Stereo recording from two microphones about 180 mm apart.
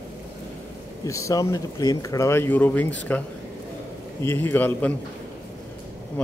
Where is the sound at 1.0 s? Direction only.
20° left (ahead or behind).